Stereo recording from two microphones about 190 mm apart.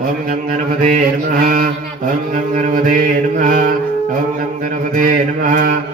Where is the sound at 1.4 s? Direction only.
45° right (ahead or behind).